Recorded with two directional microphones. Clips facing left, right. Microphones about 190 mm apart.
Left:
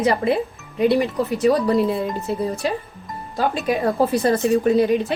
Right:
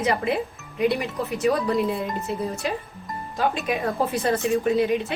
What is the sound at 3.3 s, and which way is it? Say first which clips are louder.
Speech: left 4 dB; 35° left (ahead or behind).